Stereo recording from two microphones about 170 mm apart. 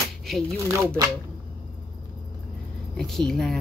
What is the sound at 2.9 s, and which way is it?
Speech, 5° left (ahead or behind).